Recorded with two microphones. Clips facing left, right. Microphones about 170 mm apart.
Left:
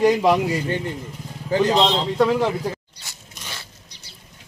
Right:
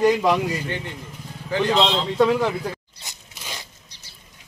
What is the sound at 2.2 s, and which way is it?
Speech, 10° left (ahead or behind).